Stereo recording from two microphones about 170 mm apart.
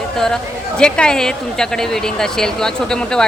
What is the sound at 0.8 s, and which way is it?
Speech, 5° left (ahead or behind).